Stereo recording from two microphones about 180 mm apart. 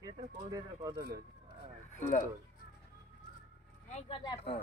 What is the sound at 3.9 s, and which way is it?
Speech, 30° left (ahead or behind).